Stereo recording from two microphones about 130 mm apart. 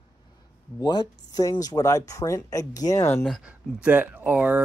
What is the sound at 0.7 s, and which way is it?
Speech, 30° left (ahead or behind).